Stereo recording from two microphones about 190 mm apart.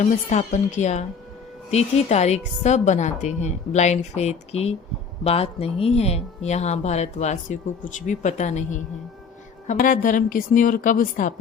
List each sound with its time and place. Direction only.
0.0 s a woman's voice: 40° left (ahead or behind)